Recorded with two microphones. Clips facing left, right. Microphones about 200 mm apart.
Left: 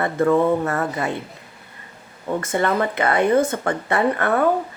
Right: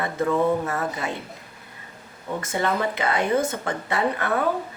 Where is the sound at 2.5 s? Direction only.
55° left (ahead or behind).